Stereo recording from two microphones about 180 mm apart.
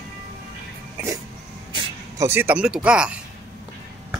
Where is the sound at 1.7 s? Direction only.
15° right (ahead or behind).